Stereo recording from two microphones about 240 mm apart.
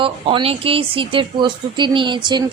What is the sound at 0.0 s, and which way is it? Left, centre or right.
Speech, right.